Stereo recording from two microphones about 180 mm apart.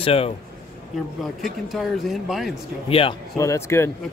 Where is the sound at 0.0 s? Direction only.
35° left (ahead or behind).